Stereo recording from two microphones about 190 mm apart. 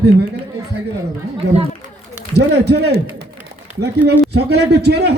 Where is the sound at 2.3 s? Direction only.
60° right (ahead or behind).